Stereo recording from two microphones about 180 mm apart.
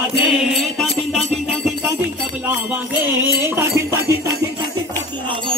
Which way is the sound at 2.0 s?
10° right (ahead or behind).